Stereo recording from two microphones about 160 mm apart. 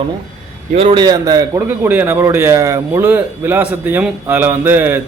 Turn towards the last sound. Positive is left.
turn(degrees=-15)  # may be behind; listen again after turning